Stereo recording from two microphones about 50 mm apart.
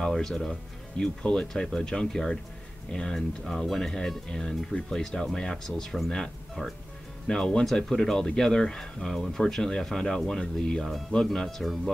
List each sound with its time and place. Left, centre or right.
0.0 s speech: centre
1.2 s speech: left
1.5 s speech: centre